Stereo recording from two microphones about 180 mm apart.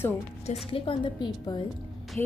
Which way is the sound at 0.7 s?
30° left (ahead or behind).